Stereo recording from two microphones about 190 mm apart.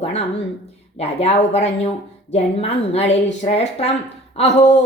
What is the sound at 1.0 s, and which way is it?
Speech, 30° left (ahead or behind).